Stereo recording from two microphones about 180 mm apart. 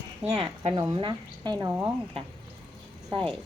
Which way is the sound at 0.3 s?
30° right (ahead or behind).